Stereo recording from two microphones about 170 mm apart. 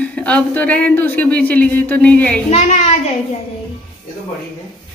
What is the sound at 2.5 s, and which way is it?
Speech, 40° left (ahead or behind).